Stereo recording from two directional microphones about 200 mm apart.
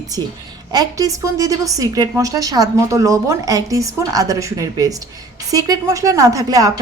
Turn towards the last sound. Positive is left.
turn(degrees=-20)  # may be behind; listen again after turning